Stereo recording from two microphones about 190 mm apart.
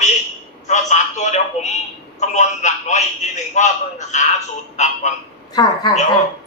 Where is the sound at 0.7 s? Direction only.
40° left (ahead or behind).